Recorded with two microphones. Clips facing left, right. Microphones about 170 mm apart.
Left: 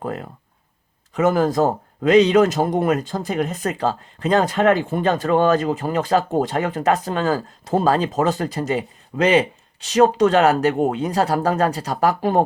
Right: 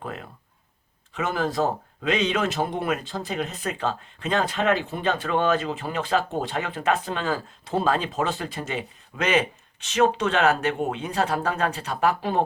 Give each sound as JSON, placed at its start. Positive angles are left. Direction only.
{"t": 0.0, "sound": "speech", "side_deg": 40}